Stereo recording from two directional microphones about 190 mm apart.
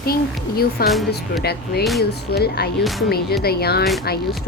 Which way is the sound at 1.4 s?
55° left (ahead or behind).